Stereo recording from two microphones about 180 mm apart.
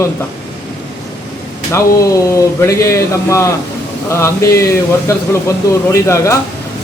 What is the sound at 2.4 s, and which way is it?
A man's voice, 15° left (ahead or behind).